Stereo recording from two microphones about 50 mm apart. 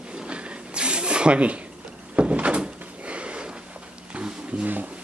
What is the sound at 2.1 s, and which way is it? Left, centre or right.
Door, right.